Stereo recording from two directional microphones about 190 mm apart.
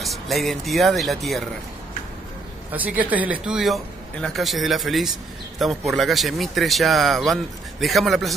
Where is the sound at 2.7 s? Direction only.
10° right (ahead or behind).